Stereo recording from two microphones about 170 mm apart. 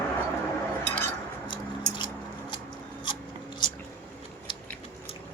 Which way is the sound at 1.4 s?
30° left (ahead or behind).